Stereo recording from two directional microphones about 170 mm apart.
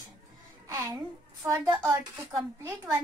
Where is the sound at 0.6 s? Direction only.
15° right (ahead or behind).